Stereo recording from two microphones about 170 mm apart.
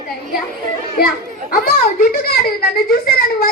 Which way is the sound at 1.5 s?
60° left (ahead or behind).